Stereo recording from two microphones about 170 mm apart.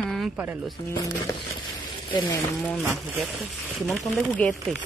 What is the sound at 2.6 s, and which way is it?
Speech, 5° left (ahead or behind).